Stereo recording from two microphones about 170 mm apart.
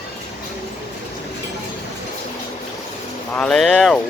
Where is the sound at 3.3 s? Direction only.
5° left (ahead or behind).